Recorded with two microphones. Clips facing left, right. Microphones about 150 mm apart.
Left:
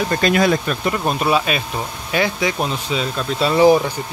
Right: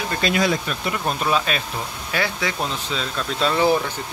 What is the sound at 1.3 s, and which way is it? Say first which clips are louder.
Speech: left 3 dB; 10° left (ahead or behind).